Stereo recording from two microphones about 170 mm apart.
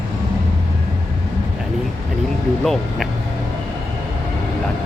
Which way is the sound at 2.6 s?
Centre (ahead or behind).